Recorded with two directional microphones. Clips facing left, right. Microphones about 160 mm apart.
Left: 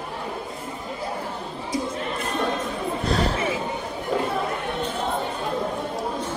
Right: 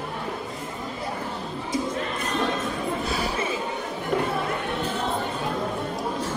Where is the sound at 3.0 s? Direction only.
10° right (ahead or behind).